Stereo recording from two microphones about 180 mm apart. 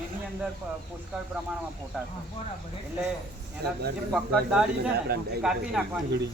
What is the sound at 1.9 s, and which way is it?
Speech, 5° right (ahead or behind).